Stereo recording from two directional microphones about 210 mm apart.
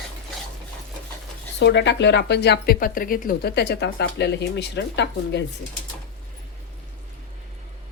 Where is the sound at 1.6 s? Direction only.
55° left (ahead or behind).